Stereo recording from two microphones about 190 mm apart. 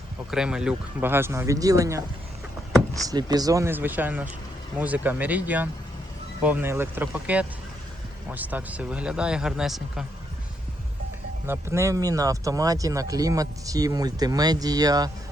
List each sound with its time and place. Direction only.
0.3 s speech: 5° right (ahead or behind)
3.1 s speech: 20° right (ahead or behind); by 10.1 s centre (ahead or behind)
11.4 s speech: 15° right (ahead or behind)